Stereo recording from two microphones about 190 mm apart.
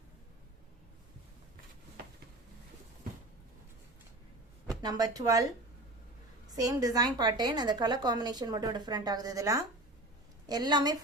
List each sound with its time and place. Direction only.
4.7 s speech: 20° right (ahead or behind)
6.6 s a woman's voice: 20° right (ahead or behind)